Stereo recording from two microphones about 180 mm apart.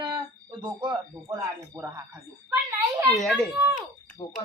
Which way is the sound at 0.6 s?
25° right (ahead or behind).